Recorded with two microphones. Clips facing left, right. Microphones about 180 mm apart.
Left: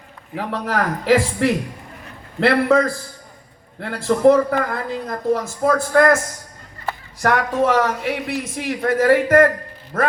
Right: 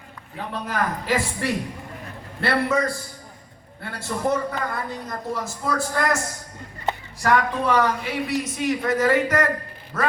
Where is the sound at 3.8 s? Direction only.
90° left.